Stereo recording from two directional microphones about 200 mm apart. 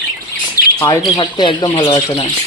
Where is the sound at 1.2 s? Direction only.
25° left (ahead or behind).